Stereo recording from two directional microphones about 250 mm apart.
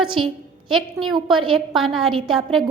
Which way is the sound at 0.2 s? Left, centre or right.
Right.